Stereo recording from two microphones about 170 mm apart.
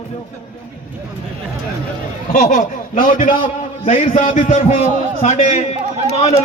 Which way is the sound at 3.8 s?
40° left (ahead or behind).